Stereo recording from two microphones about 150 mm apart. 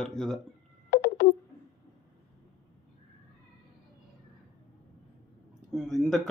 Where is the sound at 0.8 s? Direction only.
85° left.